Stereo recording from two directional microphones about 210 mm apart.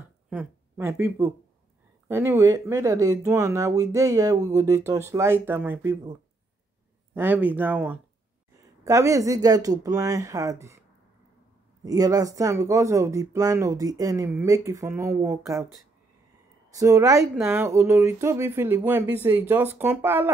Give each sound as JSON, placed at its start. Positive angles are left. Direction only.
{"t": 0.3, "sound": "speech", "side_deg": -10}
{"t": 7.2, "sound": "speech", "side_deg": -10}
{"t": 11.8, "sound": "speech", "side_deg": -15}
{"t": 16.7, "sound": "speech", "side_deg": -15}